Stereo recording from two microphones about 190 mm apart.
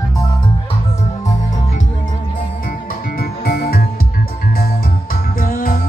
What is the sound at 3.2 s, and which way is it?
Music, 55° left (ahead or behind).